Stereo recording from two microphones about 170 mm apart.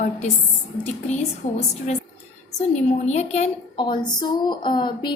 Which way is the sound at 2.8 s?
40° left (ahead or behind).